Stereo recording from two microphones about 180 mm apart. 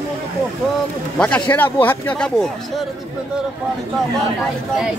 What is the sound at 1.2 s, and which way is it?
Speech, 10° left (ahead or behind).